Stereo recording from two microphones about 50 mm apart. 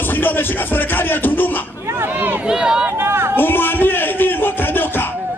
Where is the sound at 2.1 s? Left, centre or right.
Right.